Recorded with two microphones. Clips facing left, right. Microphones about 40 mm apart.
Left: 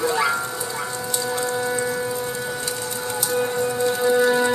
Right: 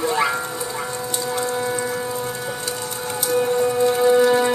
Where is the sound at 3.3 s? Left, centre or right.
Centre.